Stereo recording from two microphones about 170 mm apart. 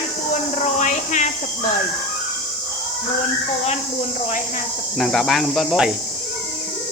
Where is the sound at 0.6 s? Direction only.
45° left (ahead or behind).